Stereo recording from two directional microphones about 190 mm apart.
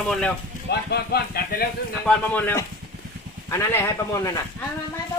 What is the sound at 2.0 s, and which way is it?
Speech, 10° left (ahead or behind).